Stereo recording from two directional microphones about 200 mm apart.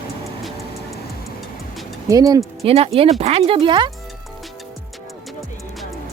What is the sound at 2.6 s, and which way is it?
Speech, 30° right (ahead or behind).